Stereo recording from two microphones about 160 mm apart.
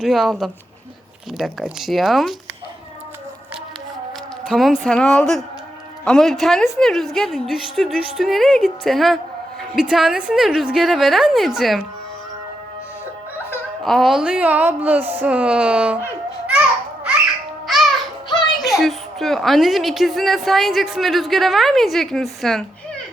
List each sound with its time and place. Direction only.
0.0 s a woman's voice: centre (ahead or behind)
4.4 s a woman's voice: centre (ahead or behind)
13.8 s a woman's voice: centre (ahead or behind)
18.3 s music: 30° left (ahead or behind)
18.6 s a woman's voice: centre (ahead or behind)